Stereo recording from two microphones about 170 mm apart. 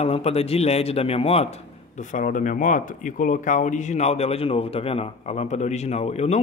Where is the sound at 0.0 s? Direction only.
40° left (ahead or behind).